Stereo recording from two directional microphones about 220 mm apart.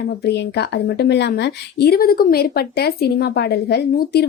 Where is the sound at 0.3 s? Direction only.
50° left (ahead or behind).